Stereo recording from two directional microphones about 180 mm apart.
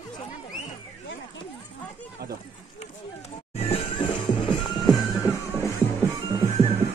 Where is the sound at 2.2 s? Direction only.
65° right (ahead or behind).